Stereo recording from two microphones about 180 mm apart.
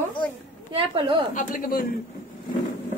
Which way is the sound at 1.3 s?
45° left (ahead or behind).